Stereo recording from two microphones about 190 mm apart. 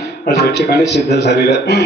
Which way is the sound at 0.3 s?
60° left (ahead or behind).